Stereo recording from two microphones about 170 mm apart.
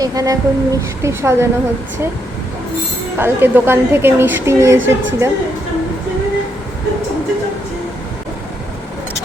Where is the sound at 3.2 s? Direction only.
10° right (ahead or behind).